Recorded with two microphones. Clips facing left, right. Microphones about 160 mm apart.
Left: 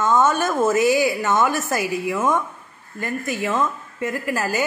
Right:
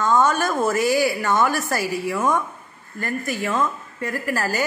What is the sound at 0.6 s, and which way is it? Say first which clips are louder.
A woman's voice: left 3 dB; 20° left (ahead or behind).